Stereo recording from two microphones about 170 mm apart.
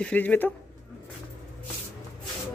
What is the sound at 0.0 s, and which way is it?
Speech, 10° left (ahead or behind).